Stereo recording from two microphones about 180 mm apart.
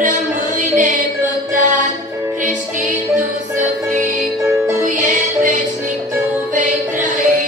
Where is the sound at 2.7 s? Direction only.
45° right (ahead or behind).